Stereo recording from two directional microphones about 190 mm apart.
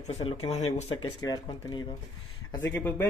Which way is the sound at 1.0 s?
20° left (ahead or behind).